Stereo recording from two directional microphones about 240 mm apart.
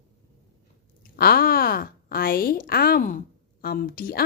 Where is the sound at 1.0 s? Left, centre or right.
Left.